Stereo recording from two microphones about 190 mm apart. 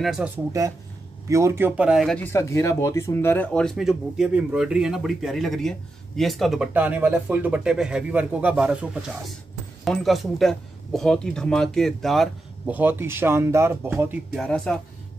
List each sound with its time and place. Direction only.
0.0 s speech: centre (ahead or behind)
0.5 s speech: 15° right (ahead or behind)
9.8 s speech: centre (ahead or behind)
14.4 s speech: 5° left (ahead or behind)